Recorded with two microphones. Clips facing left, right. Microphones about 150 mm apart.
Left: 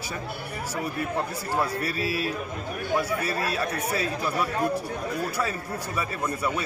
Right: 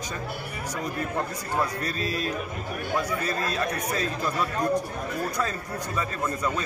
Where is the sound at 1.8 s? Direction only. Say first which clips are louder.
Left 1 dB; 10° left (ahead or behind).